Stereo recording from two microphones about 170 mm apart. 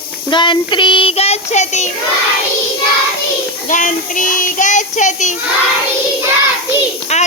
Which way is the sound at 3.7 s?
50° left (ahead or behind).